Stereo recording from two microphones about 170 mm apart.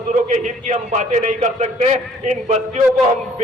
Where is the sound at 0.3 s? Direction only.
45° right (ahead or behind).